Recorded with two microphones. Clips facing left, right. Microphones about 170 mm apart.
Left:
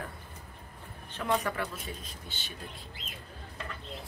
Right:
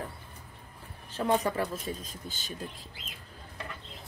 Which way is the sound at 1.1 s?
35° right (ahead or behind).